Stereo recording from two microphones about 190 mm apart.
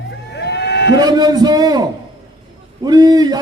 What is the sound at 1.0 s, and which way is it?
Speech, 20° right (ahead or behind).